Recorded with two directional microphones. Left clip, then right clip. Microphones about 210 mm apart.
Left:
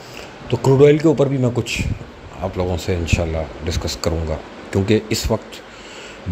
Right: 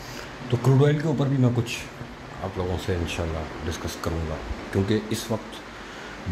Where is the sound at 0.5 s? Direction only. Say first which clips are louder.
Left 11 dB; 15° left (ahead or behind).